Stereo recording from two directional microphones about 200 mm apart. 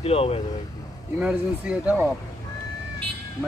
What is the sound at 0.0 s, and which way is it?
Speech, 30° left (ahead or behind).